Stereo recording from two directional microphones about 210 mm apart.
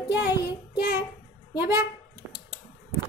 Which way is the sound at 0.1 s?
55° left (ahead or behind).